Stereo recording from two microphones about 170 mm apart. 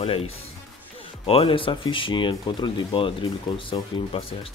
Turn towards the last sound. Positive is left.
turn(degrees=30)  # may be behind; listen again after turning